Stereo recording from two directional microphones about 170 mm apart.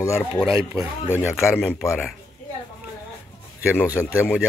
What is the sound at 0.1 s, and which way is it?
Speech, 5° right (ahead or behind).